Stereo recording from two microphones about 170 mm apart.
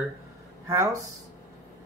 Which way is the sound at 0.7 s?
20° right (ahead or behind).